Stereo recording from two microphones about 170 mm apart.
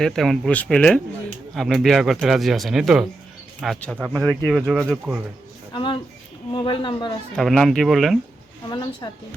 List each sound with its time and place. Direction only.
0.0 s speech: centre (ahead or behind)
5.7 s a woman's voice: 30° left (ahead or behind)
7.3 s speech: centre (ahead or behind)
8.7 s a woman's voice: 25° left (ahead or behind)